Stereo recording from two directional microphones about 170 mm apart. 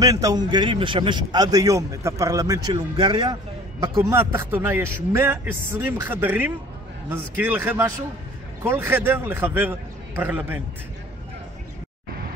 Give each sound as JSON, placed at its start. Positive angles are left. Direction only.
{"t": 0.0, "sound": "a man's voice", "side_deg": -20}
{"t": 4.1, "sound": "a man's voice", "side_deg": -15}